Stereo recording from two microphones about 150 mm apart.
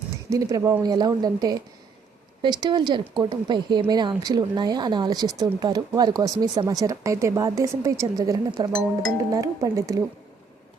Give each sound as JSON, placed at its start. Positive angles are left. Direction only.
{"t": 0.3, "sound": "speech", "side_deg": -25}